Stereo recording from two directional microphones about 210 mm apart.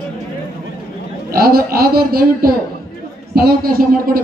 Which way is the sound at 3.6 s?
45° right (ahead or behind).